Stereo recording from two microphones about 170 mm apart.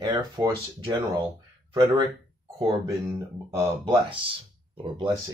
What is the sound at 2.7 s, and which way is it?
Speech, 20° right (ahead or behind).